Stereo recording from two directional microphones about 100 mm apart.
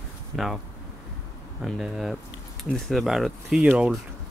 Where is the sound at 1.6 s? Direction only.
Centre (ahead or behind).